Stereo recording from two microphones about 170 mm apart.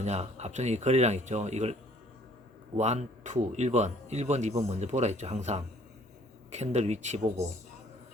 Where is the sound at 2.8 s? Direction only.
40° right (ahead or behind).